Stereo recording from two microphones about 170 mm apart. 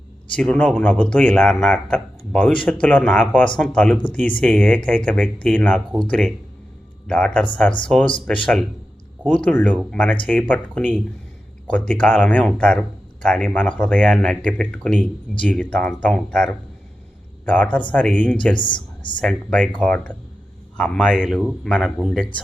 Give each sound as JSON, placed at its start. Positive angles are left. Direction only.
{"t": 0.3, "sound": "speech", "side_deg": 5}
{"t": 18.5, "sound": "speech", "side_deg": 30}
{"t": 19.2, "sound": "speech", "side_deg": 5}